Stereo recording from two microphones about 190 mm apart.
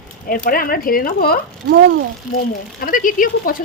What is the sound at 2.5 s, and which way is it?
Speech, 50° left (ahead or behind).